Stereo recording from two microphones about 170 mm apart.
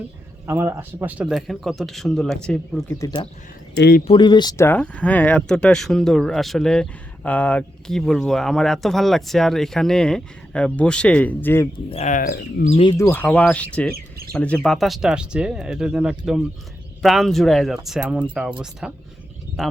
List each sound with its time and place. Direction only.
0.4 s speech: 15° right (ahead or behind); by 3.0 s 5° left (ahead or behind)
3.0 s speech: 25° left (ahead or behind)
3.8 s speech: 65° left (ahead or behind)
4.0 s speech: 30° left (ahead or behind); by 11.7 s 15° left (ahead or behind)
11.9 s speech: 40° left (ahead or behind)
12.7 s speech: 35° left (ahead or behind)
13.0 s speech: 15° left (ahead or behind)
13.9 s speech: 65° right (ahead or behind)
14.3 s speech: 5° left (ahead or behind)